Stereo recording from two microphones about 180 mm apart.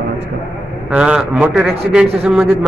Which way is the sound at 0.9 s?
5° right (ahead or behind).